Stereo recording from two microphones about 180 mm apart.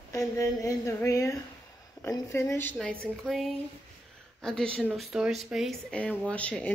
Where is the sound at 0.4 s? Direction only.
20° left (ahead or behind).